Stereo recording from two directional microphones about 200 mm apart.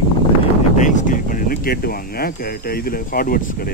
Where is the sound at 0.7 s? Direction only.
40° left (ahead or behind).